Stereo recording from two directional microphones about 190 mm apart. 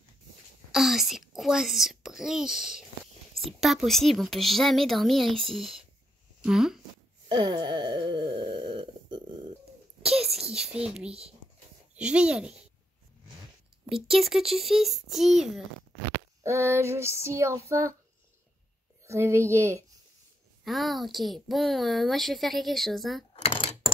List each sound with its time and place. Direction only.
0.7 s speech: centre (ahead or behind)
7.2 s wail: 25° right (ahead or behind)
10.0 s a sound: centre (ahead or behind)
11.1 s speech: 30° right (ahead or behind)
11.9 s speech: 5° right (ahead or behind)
14.0 s speech: centre (ahead or behind)
16.4 s female singing: 15° right (ahead or behind)
19.0 s female singing: 15° right (ahead or behind)
20.6 s speech: centre (ahead or behind)
23.3 s coin: 30° left (ahead or behind)